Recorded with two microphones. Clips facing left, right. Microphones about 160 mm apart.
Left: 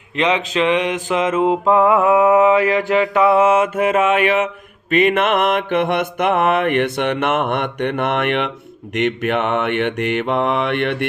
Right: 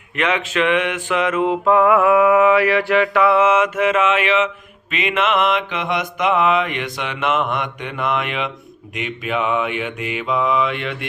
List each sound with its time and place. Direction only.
0.2 s a sound: 30° left (ahead or behind)
1.7 s mantra: 25° left (ahead or behind)
4.0 s mantra: 50° left (ahead or behind)